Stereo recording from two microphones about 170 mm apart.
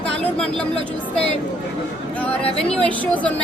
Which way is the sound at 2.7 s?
5° left (ahead or behind).